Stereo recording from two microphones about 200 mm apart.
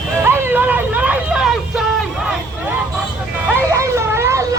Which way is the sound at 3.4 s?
10° right (ahead or behind).